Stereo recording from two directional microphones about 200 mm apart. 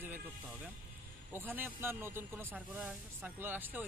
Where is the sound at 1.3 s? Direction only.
10° right (ahead or behind).